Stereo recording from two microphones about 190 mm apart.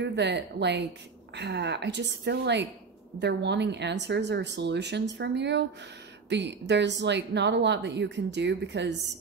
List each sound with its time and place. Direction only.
0.0 s speech: 65° right (ahead or behind)